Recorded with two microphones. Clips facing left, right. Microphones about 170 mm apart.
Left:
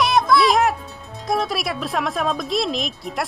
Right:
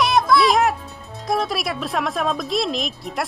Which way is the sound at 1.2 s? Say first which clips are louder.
Even; centre (ahead or behind).